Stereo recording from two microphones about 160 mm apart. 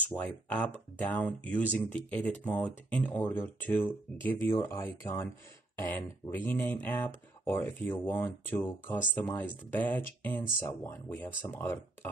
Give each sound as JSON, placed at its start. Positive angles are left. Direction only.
{"t": 0.1, "sound": "speech", "side_deg": 10}